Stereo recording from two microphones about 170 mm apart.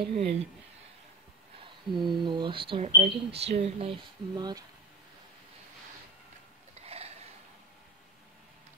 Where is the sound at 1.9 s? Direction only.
25° right (ahead or behind).